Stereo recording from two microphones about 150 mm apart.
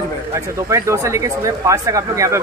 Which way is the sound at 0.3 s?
20° right (ahead or behind).